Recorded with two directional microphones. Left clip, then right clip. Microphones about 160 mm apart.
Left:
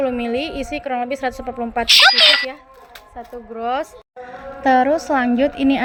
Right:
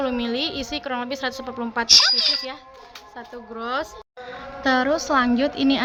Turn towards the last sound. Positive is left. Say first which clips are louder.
# left 4 dB
turn(degrees=15)  # may be behind; listen again after turning